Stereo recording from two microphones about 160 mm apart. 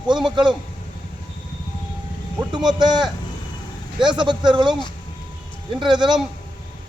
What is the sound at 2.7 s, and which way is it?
A man's voice, 25° right (ahead or behind).